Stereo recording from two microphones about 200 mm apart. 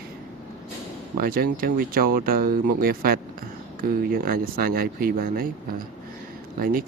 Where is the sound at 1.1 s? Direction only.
50° right (ahead or behind).